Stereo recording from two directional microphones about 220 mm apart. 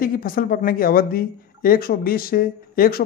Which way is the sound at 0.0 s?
40° left (ahead or behind).